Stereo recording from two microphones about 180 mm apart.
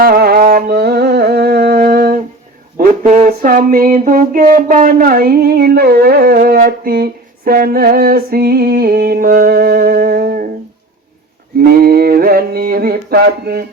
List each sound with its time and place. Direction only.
0.0 s music: 55° right (ahead or behind)
3.0 s a sound: 40° right (ahead or behind)
11.5 s mantra: 60° right (ahead or behind)